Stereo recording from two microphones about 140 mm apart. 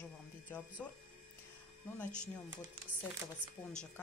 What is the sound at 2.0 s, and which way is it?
Speech, 5° left (ahead or behind).